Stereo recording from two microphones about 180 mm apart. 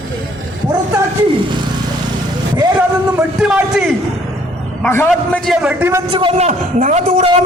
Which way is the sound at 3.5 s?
5° right (ahead or behind).